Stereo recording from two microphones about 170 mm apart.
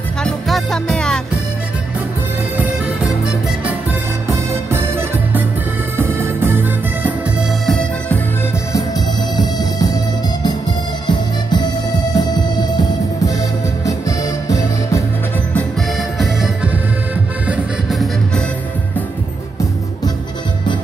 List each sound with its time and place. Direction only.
0.2 s music: centre (ahead or behind)
2.5 s music: 10° right (ahead or behind)
4.3 s music: 15° right (ahead or behind)
7.6 s music: 5° left (ahead or behind)
9.4 s music: 20° left (ahead or behind)
15.5 s music: centre (ahead or behind)